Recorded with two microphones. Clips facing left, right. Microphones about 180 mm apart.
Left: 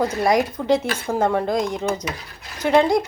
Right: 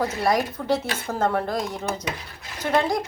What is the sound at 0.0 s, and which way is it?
Speech, 20° left (ahead or behind).